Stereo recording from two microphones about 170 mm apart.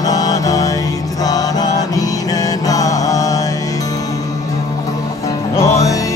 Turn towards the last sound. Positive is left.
turn(degrees=20)  # may be behind; listen again after turning